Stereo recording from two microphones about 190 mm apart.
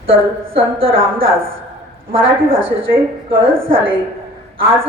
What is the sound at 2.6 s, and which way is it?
Speech, 30° right (ahead or behind).